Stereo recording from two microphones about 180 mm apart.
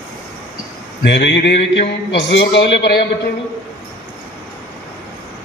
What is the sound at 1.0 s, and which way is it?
A man's voice, 70° left (ahead or behind).